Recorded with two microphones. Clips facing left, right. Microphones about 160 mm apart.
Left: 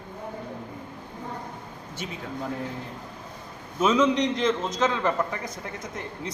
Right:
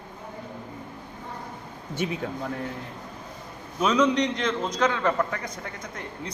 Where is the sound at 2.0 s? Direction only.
55° right (ahead or behind).